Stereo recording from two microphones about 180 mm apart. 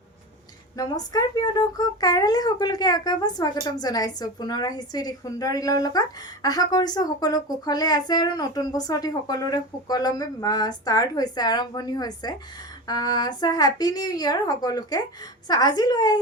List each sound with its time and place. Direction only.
0.8 s speech: 20° left (ahead or behind)